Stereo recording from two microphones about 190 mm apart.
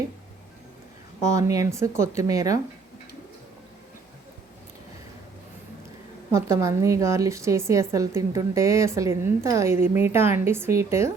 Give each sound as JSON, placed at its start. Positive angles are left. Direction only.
{"t": 1.2, "sound": "a woman's voice", "side_deg": -15}
{"t": 6.3, "sound": "a woman's voice", "side_deg": -15}